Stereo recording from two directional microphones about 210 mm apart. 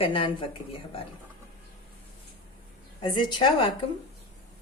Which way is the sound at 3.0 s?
20° left (ahead or behind).